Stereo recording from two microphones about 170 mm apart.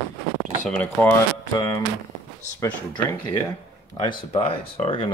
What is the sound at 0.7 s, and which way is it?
Speech, 10° left (ahead or behind).